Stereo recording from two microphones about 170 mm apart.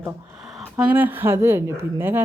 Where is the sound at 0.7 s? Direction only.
10° right (ahead or behind).